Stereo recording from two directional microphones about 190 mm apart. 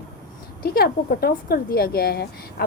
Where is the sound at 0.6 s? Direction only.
55° left (ahead or behind).